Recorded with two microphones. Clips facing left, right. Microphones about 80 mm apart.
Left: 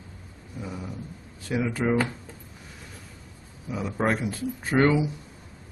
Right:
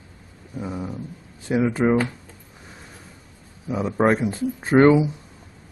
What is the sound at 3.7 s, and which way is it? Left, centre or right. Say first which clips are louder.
A man's voice: right 6 dB; right.